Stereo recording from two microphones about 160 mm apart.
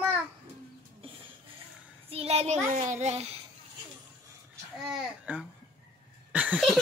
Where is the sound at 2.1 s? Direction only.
40° right (ahead or behind).